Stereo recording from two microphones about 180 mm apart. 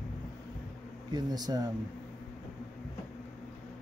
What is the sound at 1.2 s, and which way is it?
Speech, 20° right (ahead or behind).